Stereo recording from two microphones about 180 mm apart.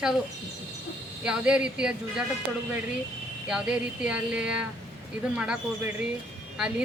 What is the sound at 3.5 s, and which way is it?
Speech, 5° right (ahead or behind).